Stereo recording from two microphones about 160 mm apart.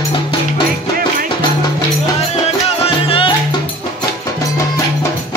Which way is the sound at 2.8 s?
35° left (ahead or behind).